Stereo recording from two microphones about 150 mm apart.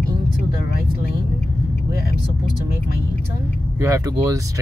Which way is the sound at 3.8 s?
20° right (ahead or behind).